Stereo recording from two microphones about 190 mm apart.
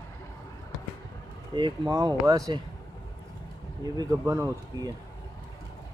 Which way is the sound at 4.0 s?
15° right (ahead or behind).